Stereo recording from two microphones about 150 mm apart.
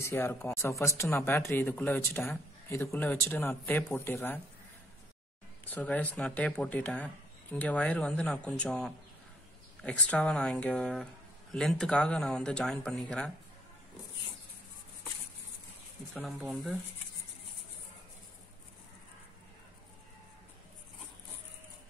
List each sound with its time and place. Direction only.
0.0 s speech: 15° left (ahead or behind)
5.7 s speech: 10° left (ahead or behind)
16.1 s speech: centre (ahead or behind)